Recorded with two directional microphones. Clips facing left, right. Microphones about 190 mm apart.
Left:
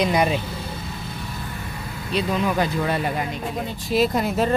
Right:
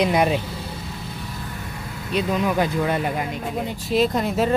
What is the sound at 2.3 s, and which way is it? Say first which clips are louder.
Speech: right 1 dB; 10° right (ahead or behind).